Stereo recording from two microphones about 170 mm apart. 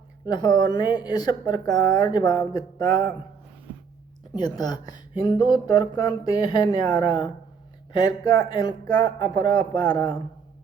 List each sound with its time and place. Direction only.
0.3 s speech: 25° left (ahead or behind)
4.4 s speech: 25° left (ahead or behind)